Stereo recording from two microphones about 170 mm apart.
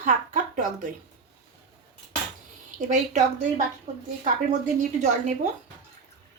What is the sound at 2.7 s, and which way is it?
Speech, 45° right (ahead or behind).